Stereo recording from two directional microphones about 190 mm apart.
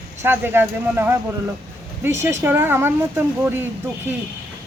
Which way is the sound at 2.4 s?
10° right (ahead or behind).